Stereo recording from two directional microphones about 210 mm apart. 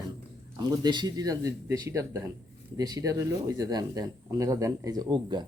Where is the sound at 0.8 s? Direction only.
20° right (ahead or behind).